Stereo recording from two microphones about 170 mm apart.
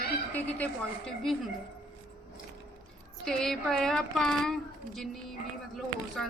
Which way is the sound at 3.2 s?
5° left (ahead or behind).